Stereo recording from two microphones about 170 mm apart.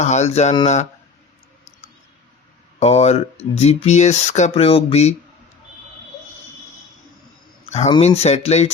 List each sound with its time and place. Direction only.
0.0 s speech: 40° left (ahead or behind)
2.8 s speech: 40° left (ahead or behind)
7.7 s speech: 35° left (ahead or behind)